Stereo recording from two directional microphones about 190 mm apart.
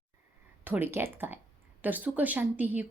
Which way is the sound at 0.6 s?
10° right (ahead or behind).